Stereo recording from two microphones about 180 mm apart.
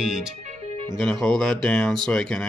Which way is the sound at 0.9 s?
Centre (ahead or behind).